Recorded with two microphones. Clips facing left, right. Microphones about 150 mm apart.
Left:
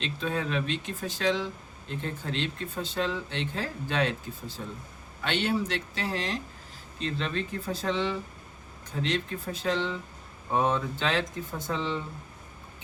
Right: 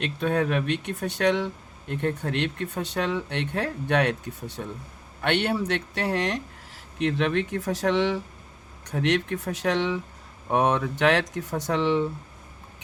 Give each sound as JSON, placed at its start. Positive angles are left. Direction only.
{"t": 0.0, "sound": "speech", "side_deg": -60}